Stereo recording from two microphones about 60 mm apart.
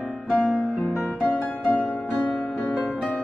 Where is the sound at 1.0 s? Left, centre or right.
Left.